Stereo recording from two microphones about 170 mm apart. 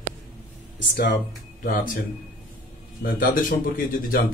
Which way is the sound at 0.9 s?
75° left (ahead or behind).